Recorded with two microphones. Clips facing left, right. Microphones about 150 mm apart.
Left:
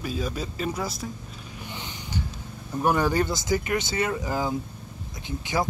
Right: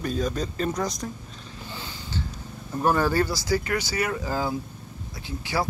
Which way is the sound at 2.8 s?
15° left (ahead or behind).